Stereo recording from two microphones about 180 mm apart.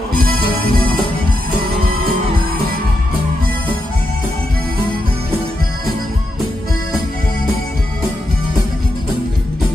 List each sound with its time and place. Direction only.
0.5 s music: 25° left (ahead or behind)